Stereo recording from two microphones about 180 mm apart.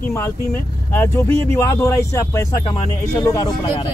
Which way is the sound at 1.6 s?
15° left (ahead or behind).